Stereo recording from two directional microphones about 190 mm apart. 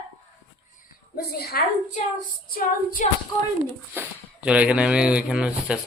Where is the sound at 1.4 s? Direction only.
55° left (ahead or behind).